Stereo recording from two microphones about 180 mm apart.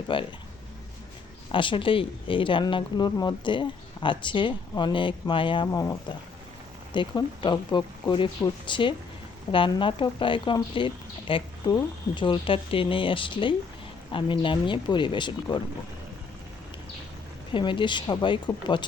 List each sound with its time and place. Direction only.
0.1 s speech: 25° left (ahead or behind)
1.5 s speech: 30° left (ahead or behind)
5.8 s speech: 15° left (ahead or behind)
17.5 s speech: 25° left (ahead or behind)